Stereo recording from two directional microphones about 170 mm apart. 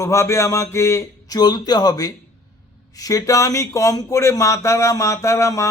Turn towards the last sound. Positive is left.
turn(degrees=20)  # may be behind; listen again after turning